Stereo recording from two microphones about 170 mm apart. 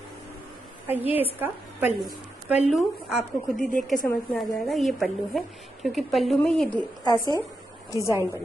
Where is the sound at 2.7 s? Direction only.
Centre (ahead or behind).